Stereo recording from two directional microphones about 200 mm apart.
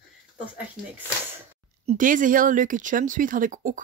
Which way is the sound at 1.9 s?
40° right (ahead or behind).